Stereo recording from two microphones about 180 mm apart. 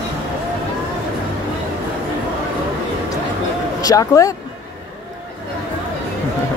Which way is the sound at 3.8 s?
20° left (ahead or behind).